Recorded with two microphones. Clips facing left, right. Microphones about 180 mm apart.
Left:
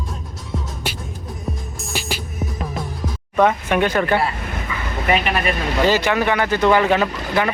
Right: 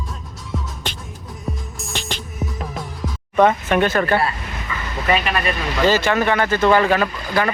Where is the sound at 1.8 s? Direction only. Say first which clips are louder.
Left 2 dB; 5° left (ahead or behind).